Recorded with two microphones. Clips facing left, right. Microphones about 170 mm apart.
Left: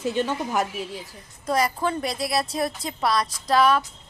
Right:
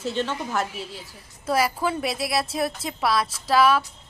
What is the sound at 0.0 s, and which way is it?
Speech, 10° left (ahead or behind).